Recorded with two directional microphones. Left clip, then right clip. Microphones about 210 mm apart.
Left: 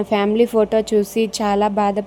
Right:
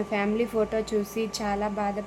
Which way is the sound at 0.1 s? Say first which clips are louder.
Left 12 dB; 35° left (ahead or behind).